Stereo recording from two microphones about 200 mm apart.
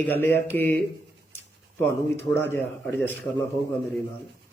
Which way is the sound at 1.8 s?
10° left (ahead or behind).